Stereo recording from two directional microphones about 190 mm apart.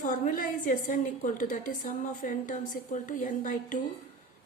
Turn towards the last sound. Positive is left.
turn(degrees=45)  # may be behind; listen again after turning